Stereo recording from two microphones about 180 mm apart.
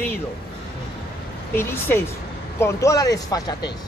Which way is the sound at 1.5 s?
10° left (ahead or behind).